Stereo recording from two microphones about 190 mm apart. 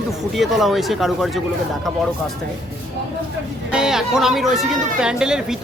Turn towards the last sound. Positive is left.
turn(degrees=-5)  # may be behind; listen again after turning